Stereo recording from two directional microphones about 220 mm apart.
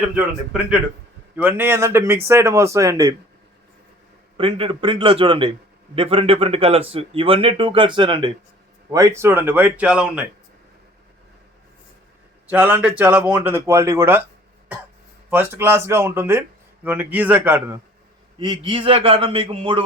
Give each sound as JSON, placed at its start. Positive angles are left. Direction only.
{"t": 1.4, "sound": "speech", "side_deg": -10}
{"t": 4.4, "sound": "speech", "side_deg": -25}
{"t": 12.5, "sound": "speech", "side_deg": -5}
{"t": 15.3, "sound": "speech", "side_deg": -10}
{"t": 18.3, "sound": "speech", "side_deg": -20}